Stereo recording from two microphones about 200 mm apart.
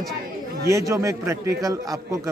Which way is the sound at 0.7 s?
15° right (ahead or behind).